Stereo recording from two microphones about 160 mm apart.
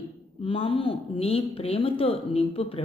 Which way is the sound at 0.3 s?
35° left (ahead or behind).